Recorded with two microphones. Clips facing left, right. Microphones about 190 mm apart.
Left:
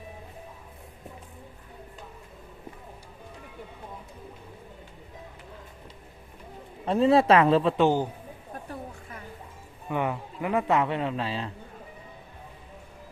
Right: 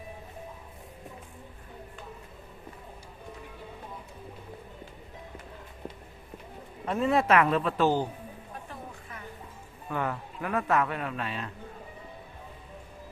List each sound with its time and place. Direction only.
6.8 s speech: 30° left (ahead or behind)
9.9 s speech: 15° left (ahead or behind)